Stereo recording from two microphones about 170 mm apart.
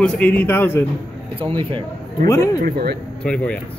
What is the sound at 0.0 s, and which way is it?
Speech, 10° left (ahead or behind).